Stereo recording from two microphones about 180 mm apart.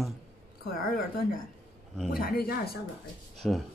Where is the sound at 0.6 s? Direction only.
55° left (ahead or behind).